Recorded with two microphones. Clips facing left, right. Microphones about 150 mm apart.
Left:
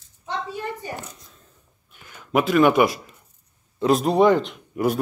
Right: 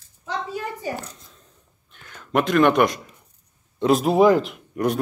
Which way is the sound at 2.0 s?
10° left (ahead or behind).